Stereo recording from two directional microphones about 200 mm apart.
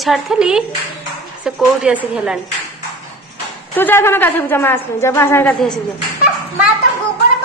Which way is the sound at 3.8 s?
10° left (ahead or behind).